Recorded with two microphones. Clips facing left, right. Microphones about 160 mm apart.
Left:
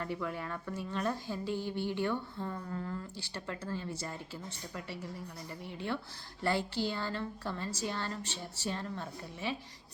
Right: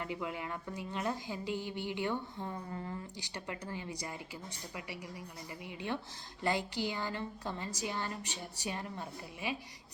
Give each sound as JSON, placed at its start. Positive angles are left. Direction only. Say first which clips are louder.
{"t": 0.0, "sound": "a woman's voice", "louder": "left 2 dB", "side_deg": -15}